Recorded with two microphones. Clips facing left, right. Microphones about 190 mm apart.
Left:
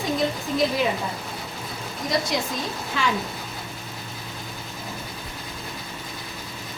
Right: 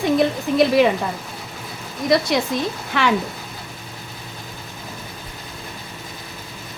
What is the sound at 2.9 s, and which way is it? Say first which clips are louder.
Speech: right 6 dB; 70° right (ahead or behind).